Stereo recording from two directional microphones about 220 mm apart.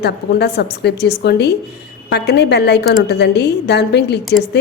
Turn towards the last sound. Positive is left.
turn(degrees=50)  # may be behind; listen again after turning